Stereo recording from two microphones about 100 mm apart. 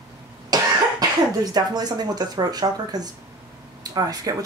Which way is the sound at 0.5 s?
40° right (ahead or behind).